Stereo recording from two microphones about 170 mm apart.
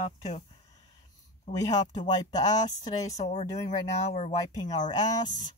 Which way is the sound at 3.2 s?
45° left (ahead or behind).